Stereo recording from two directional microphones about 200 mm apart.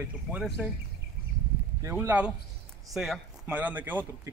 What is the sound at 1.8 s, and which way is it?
Speech, 10° right (ahead or behind).